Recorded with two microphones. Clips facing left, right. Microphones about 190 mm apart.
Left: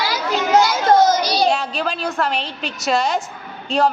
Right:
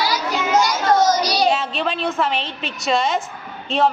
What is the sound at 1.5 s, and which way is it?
A woman's voice, centre (ahead or behind).